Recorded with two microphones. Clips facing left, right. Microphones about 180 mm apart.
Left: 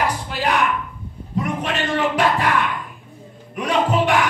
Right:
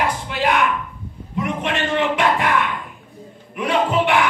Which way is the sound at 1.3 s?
35° left (ahead or behind).